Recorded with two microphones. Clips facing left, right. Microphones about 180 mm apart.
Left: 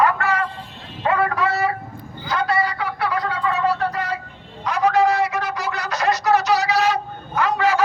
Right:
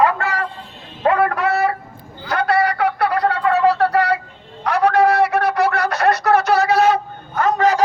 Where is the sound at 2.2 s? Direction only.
65° right (ahead or behind); by 7.8 s 40° right (ahead or behind).